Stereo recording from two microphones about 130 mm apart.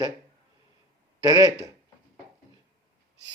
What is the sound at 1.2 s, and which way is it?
Speech, 30° right (ahead or behind).